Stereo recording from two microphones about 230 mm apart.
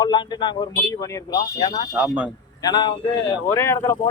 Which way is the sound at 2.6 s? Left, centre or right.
Centre.